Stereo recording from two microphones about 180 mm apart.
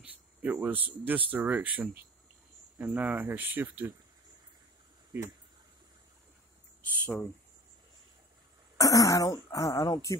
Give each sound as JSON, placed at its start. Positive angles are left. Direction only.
{"t": 0.0, "sound": "speech", "side_deg": -10}
{"t": 5.1, "sound": "speech", "side_deg": -15}
{"t": 8.7, "sound": "speech", "side_deg": 20}